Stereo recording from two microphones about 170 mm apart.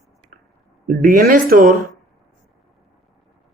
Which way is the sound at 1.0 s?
55° right (ahead or behind).